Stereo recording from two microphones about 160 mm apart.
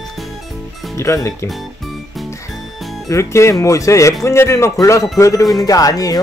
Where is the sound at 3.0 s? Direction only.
15° left (ahead or behind).